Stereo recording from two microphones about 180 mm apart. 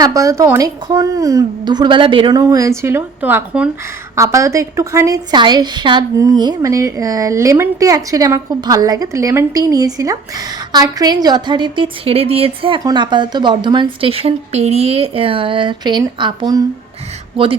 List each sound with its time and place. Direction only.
0.0 s a woman's voice: 20° right (ahead or behind)
2.4 s a woman's voice: 20° right (ahead or behind)